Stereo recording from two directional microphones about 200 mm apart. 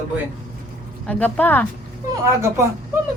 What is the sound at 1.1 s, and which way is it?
Speech, 5° left (ahead or behind).